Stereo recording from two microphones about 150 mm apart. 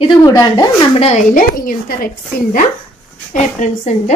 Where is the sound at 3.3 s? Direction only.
50° left (ahead or behind).